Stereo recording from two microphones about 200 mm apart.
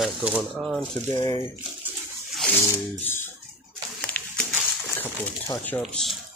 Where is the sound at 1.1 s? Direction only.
20° left (ahead or behind).